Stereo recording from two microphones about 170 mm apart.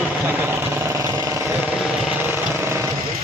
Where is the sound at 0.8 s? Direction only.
15° right (ahead or behind).